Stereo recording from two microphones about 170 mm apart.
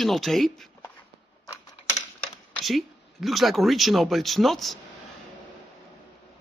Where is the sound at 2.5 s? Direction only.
Centre (ahead or behind).